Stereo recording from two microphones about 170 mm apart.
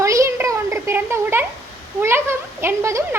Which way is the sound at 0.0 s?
15° right (ahead or behind).